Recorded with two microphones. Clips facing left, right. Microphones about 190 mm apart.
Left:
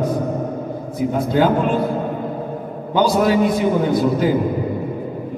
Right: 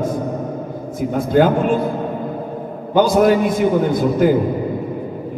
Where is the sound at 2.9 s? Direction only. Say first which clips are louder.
Right 3 dB; 50° right (ahead or behind).